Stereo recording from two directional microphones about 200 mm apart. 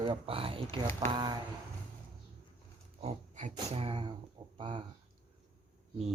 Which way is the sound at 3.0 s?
40° right (ahead or behind).